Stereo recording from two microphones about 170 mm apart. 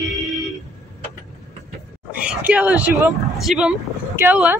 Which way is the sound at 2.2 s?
5° right (ahead or behind).